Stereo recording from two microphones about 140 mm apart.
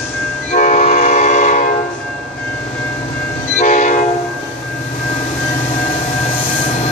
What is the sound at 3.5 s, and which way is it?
Train, 65° left (ahead or behind).